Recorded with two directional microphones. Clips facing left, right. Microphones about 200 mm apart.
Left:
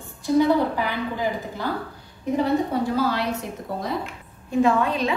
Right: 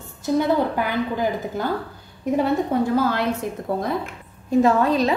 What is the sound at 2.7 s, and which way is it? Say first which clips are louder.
Speech: right 3 dB; 50° right (ahead or behind).